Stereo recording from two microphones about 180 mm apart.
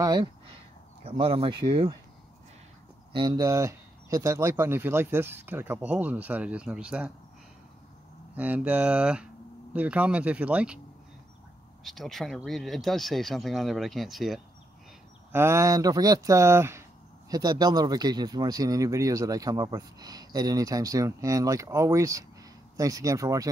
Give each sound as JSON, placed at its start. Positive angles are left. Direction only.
{"t": 0.0, "sound": "speech", "side_deg": -25}
{"t": 3.1, "sound": "speech", "side_deg": -25}
{"t": 8.4, "sound": "speech", "side_deg": -10}
{"t": 11.8, "sound": "speech", "side_deg": 0}
{"t": 15.3, "sound": "speech", "side_deg": -15}